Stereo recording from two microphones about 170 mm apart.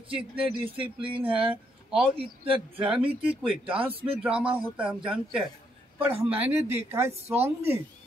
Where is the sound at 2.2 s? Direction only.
35° right (ahead or behind).